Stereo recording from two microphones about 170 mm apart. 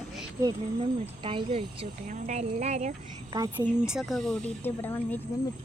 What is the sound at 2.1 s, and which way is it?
Speech, 45° right (ahead or behind).